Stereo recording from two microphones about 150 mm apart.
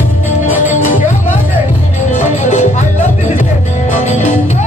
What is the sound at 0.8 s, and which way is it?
Music, 65° left (ahead or behind).